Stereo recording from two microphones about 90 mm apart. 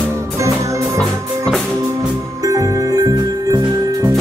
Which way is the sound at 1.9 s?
40° right (ahead or behind).